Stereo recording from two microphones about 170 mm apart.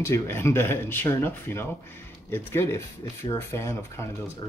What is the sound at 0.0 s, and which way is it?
Speech, 15° left (ahead or behind).